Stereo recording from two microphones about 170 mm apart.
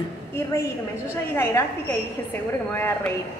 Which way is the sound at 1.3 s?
15° left (ahead or behind).